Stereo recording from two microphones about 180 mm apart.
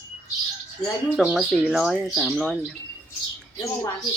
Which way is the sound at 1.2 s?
Centre (ahead or behind).